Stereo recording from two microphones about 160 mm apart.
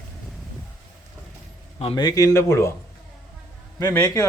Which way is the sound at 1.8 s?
35° left (ahead or behind).